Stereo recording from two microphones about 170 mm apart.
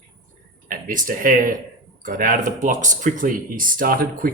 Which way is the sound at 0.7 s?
55° right (ahead or behind).